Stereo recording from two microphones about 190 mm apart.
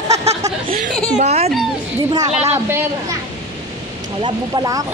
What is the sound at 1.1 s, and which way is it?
Speech, 35° right (ahead or behind).